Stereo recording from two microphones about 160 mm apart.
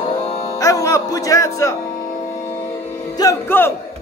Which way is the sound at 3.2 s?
25° left (ahead or behind).